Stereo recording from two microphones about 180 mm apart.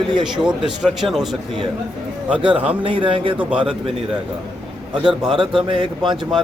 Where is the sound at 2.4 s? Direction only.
30° right (ahead or behind).